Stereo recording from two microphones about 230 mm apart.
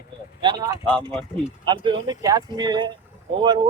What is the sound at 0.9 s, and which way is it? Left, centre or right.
Speech, centre.